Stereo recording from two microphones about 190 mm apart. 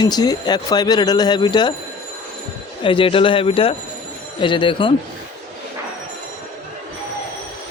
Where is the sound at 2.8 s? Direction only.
25° left (ahead or behind).